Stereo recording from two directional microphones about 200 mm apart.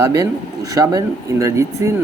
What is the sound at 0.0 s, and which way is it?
Speech, 15° right (ahead or behind).